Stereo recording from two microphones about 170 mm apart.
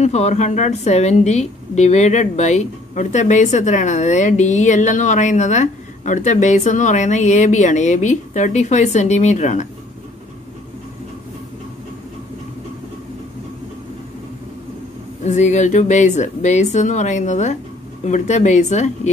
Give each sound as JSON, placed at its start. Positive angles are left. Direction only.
{"t": 0.0, "sound": "a woman's voice", "side_deg": 40}
{"t": 15.2, "sound": "a woman's voice", "side_deg": 45}